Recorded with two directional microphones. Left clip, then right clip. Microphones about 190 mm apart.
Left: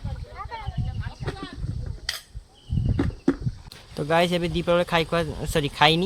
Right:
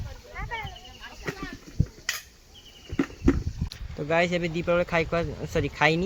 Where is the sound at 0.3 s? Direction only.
45° right (ahead or behind).